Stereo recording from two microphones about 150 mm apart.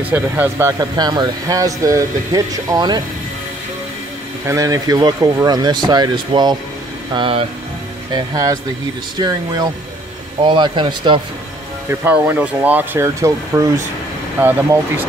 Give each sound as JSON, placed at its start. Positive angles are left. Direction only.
{"t": 0.1, "sound": "speech", "side_deg": -15}
{"t": 4.5, "sound": "speech", "side_deg": -20}
{"t": 8.1, "sound": "speech", "side_deg": -25}
{"t": 11.9, "sound": "speech", "side_deg": -15}